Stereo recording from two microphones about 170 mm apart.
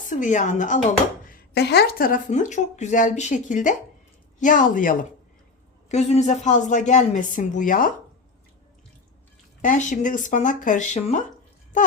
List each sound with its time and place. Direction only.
0.1 s speech: 50° left (ahead or behind)
1.3 s speech: 75° left (ahead or behind); by 4.9 s 50° left (ahead or behind)
5.9 s speech: 40° left (ahead or behind)
9.6 s speech: 45° left (ahead or behind)